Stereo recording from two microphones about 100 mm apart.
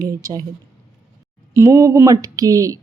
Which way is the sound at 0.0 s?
35° right (ahead or behind).